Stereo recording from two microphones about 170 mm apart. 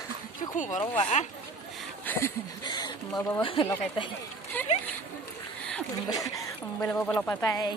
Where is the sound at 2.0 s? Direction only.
15° left (ahead or behind).